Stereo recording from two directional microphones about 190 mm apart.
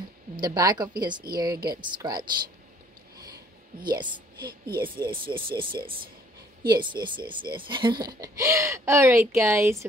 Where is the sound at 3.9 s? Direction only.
25° right (ahead or behind).